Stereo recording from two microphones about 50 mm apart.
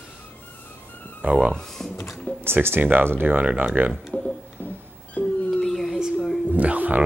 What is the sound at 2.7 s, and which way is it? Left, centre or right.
Speech, right.